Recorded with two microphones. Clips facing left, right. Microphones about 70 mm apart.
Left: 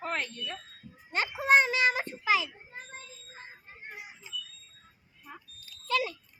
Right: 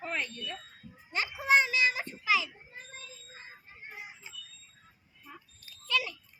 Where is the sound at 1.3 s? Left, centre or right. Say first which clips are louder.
Left 2 dB; left.